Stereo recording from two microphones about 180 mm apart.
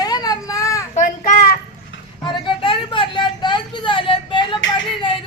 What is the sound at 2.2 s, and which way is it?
Vehicle, 25° left (ahead or behind).